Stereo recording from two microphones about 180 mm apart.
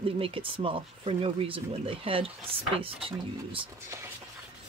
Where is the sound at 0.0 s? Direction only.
30° right (ahead or behind).